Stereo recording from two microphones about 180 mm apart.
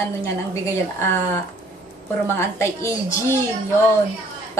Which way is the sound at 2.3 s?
15° left (ahead or behind).